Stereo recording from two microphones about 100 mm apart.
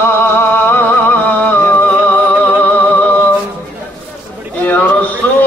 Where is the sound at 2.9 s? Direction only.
15° left (ahead or behind).